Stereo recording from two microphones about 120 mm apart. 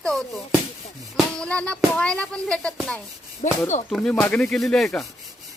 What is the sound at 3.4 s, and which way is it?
Speech, 90° left.